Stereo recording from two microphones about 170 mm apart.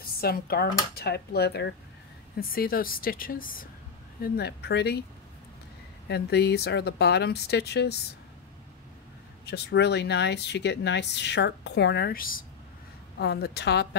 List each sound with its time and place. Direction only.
0.0 s speech: 65° left (ahead or behind); by 1.8 s 80° left
2.3 s speech: 60° left (ahead or behind)
4.2 s speech: 70° left (ahead or behind)
6.0 s speech: 75° left (ahead or behind)
9.5 s speech: 85° left; by 12.4 s 55° left (ahead or behind)
13.2 s speech: 75° left (ahead or behind)